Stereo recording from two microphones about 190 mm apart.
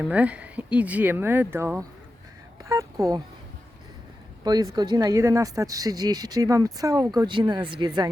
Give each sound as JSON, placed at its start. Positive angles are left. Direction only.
{"t": 0.1, "sound": "speech", "side_deg": -5}
{"t": 4.4, "sound": "speech", "side_deg": -20}